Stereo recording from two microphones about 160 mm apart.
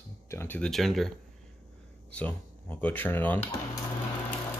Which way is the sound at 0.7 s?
Centre (ahead or behind).